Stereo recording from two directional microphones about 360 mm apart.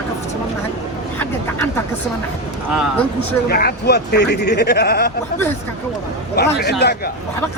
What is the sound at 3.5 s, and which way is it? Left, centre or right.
Speech, left.